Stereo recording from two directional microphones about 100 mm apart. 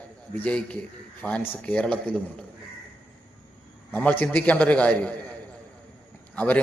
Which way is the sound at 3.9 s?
15° left (ahead or behind).